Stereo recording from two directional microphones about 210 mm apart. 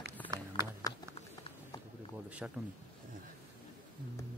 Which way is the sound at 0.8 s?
15° left (ahead or behind).